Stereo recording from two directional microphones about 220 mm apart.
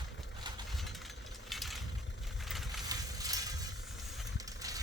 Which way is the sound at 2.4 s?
Centre (ahead or behind).